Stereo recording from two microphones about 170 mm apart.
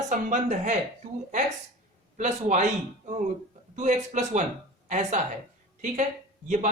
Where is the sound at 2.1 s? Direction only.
45° right (ahead or behind).